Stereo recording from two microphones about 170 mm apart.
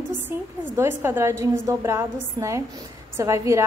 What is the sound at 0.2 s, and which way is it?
A woman's voice, 15° right (ahead or behind).